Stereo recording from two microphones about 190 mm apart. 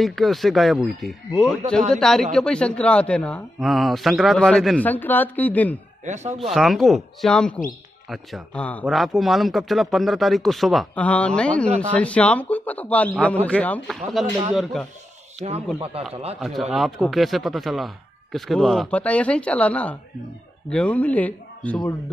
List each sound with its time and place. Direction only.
0.0 s speech: centre (ahead or behind)
6.0 s speech: 35° right (ahead or behind)
6.5 s a man's voice: centre (ahead or behind)
16.3 s a man's voice: centre (ahead or behind)